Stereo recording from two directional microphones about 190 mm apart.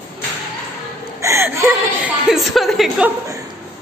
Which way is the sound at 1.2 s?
15° right (ahead or behind).